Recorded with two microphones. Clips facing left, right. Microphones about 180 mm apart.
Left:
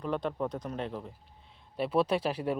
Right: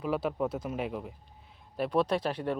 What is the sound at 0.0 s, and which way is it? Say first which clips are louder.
A man's voice: right 2 dB; 5° right (ahead or behind).